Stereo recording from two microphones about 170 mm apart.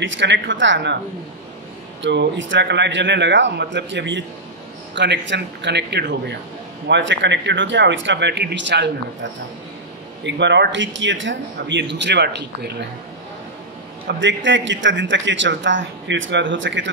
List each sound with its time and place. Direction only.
0.0 s a man's voice: 90° right
2.0 s a man's voice: 90° right
14.0 s a man's voice: 90° right